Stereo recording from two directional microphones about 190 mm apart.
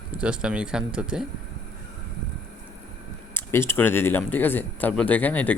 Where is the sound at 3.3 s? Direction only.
15° left (ahead or behind).